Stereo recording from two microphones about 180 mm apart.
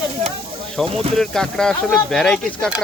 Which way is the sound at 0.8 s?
35° right (ahead or behind).